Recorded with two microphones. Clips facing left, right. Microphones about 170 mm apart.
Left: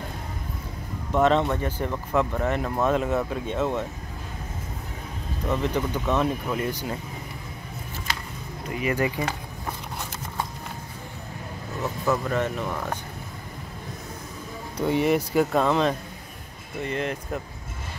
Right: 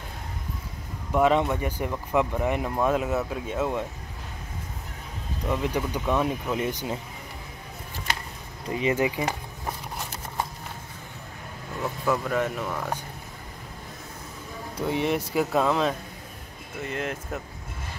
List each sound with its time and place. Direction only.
1.1 s speech: 10° right (ahead or behind)
5.5 s speech: 10° right (ahead or behind)
8.6 s speech: 20° right (ahead or behind)
12.1 s speech: 5° right (ahead or behind)
14.8 s speech: centre (ahead or behind)